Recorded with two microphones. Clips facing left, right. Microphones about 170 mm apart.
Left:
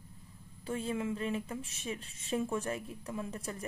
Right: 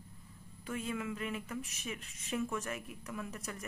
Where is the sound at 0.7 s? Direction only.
30° left (ahead or behind).